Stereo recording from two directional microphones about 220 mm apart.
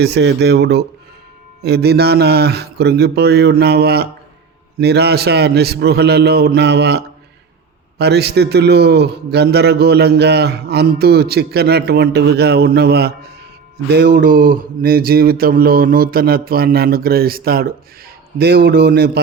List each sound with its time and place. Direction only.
0.0 s a man's voice: 50° right (ahead or behind)